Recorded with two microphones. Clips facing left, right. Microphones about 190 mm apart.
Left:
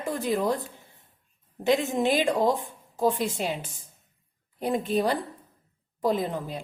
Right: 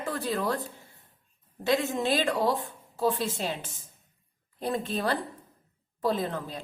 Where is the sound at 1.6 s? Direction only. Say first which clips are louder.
Left 3 dB; 15° left (ahead or behind).